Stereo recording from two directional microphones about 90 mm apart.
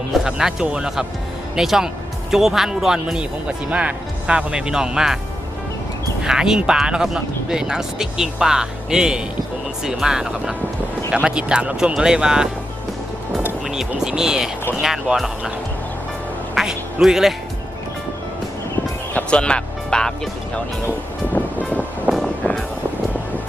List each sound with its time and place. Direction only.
0.1 s speech: 5° right (ahead or behind)
6.2 s speech: 5° right (ahead or behind)
13.7 s speech: 5° right (ahead or behind)
16.6 s quack: 5° right (ahead or behind)
19.1 s speech: 10° left (ahead or behind)
22.1 s music: 20° right (ahead or behind)